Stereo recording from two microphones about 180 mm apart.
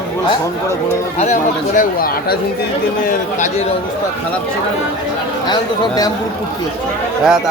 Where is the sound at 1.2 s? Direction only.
45° left (ahead or behind).